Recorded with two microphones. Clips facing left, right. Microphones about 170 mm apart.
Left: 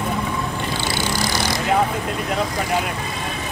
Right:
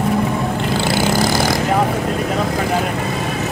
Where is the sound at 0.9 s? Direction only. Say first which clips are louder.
Right 8 dB; 50° right (ahead or behind).